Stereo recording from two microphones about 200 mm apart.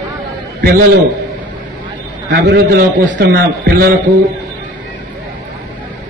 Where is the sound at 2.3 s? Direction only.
55° right (ahead or behind).